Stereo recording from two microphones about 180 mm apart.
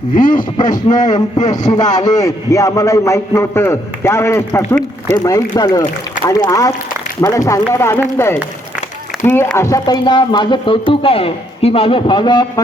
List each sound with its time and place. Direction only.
0.2 s speech: 50° left (ahead or behind)
1.0 s a man's voice: 20° left (ahead or behind)